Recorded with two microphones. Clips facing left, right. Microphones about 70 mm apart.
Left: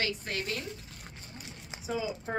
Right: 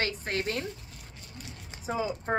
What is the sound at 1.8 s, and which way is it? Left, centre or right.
Speech, right.